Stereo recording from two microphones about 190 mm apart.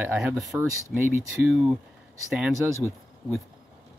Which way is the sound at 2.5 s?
15° right (ahead or behind).